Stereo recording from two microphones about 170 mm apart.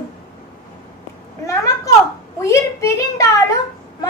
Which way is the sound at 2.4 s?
15° left (ahead or behind).